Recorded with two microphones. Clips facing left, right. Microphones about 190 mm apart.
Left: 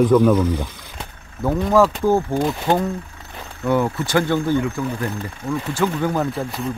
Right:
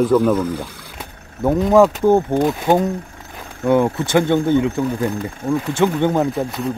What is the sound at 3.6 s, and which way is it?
Speech, 25° right (ahead or behind).